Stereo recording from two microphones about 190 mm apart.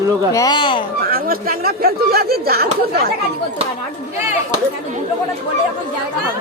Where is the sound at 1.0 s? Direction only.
50° right (ahead or behind).